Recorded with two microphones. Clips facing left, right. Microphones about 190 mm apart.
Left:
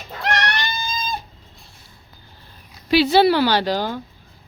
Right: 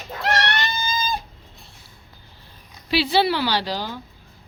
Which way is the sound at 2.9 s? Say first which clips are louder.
Left 5 dB; 45° left (ahead or behind).